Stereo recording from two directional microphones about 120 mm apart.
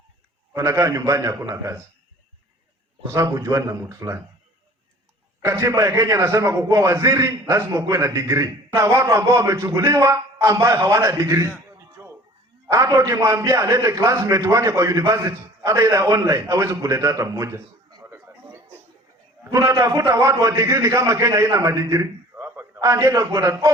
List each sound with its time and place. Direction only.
0.5 s a man's voice: 25° right (ahead or behind)
3.1 s a man's voice: 25° right (ahead or behind)
5.4 s a man's voice: 25° right (ahead or behind)
12.0 s a sound: 20° right (ahead or behind)
12.6 s a man's voice: 25° right (ahead or behind)